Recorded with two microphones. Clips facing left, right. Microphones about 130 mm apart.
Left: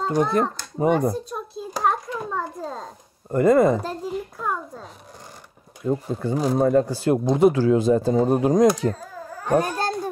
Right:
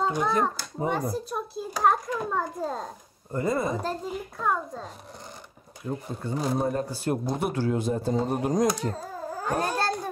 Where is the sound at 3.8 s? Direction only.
5° left (ahead or behind).